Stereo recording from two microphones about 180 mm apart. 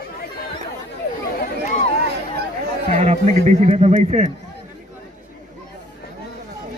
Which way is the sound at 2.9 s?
40° right (ahead or behind).